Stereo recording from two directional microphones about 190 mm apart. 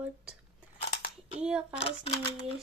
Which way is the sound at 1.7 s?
35° left (ahead or behind).